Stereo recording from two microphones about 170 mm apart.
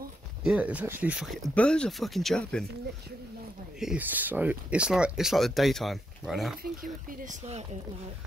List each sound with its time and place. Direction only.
0.4 s speech: 5° right (ahead or behind)
3.8 s speech: 10° right (ahead or behind)
6.6 s speech: 55° right (ahead or behind)